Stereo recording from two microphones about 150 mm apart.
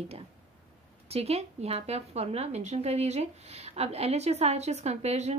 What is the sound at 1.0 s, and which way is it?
A woman's voice, 45° right (ahead or behind).